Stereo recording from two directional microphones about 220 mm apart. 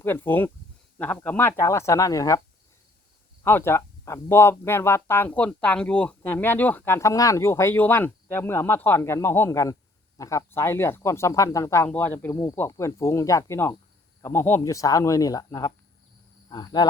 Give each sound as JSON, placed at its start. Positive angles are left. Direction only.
{"t": 0.0, "sound": "speech", "side_deg": 10}
{"t": 3.4, "sound": "speech", "side_deg": 10}